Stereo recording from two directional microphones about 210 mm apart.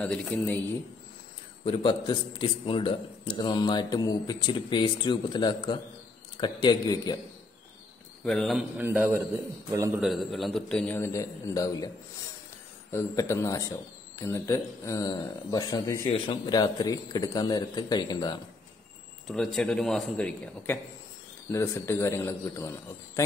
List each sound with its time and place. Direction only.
0.0 s a man's voice: 5° left (ahead or behind)
1.6 s a man's voice: 25° left (ahead or behind)
8.2 s a man's voice: centre (ahead or behind)
12.9 s a man's voice: 15° left (ahead or behind)
19.2 s a man's voice: centre (ahead or behind)